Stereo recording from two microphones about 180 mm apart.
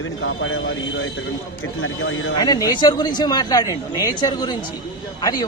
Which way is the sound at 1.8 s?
90° left.